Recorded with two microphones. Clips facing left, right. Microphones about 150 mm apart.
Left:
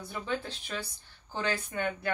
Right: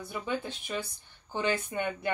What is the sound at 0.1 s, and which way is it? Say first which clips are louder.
Speech: right 1 dB; 15° right (ahead or behind).